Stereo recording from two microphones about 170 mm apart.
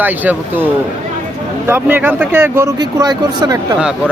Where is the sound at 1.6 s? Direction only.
10° right (ahead or behind).